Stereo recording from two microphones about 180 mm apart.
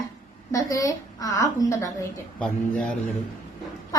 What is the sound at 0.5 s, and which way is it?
A child's voice, 20° left (ahead or behind).